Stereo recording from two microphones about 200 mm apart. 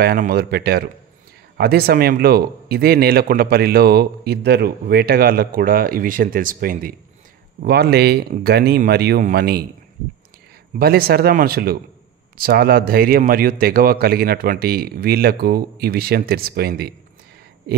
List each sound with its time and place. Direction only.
0.0 s a man's voice: 50° right (ahead or behind)
10.8 s a man's voice: 50° right (ahead or behind)